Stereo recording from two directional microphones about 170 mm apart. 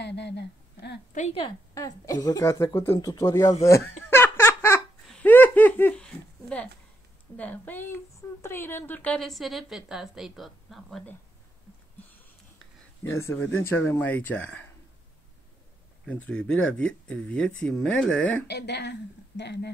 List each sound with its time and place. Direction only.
0.0 s a sound: 90° left
1.3 s a woman's voice: 25° left (ahead or behind)
4.1 s giggle: 15° left (ahead or behind)
5.0 s a sound: 5° left (ahead or behind)
7.3 s a woman's voice: 10° left (ahead or behind)
13.0 s speech: 15° left (ahead or behind)
16.1 s speech: 5° left (ahead or behind)
18.5 s a woman's voice: 80° left